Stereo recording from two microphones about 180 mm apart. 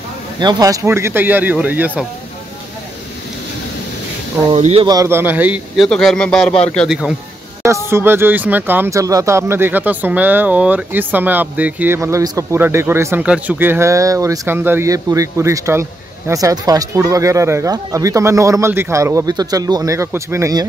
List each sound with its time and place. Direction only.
0.4 s speech: 20° right (ahead or behind)
4.6 s speech: 35° right (ahead or behind)
4.8 s speech: 15° right (ahead or behind)
5.9 s speech: 5° left (ahead or behind)
7.6 s speech: 15° right (ahead or behind)